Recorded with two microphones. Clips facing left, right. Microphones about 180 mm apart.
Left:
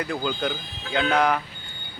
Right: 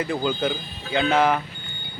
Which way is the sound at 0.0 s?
Centre (ahead or behind).